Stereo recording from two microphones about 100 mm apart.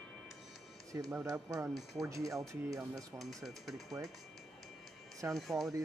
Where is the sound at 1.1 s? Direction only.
35° right (ahead or behind).